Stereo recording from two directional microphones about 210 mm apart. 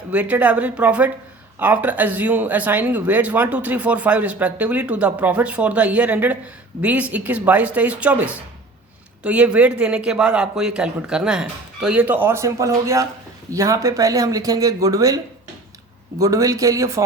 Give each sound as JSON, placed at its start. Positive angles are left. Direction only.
{"t": 0.1, "sound": "speech", "side_deg": -5}